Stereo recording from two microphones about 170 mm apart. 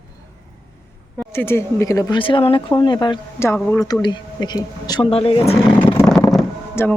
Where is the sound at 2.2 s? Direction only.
30° left (ahead or behind).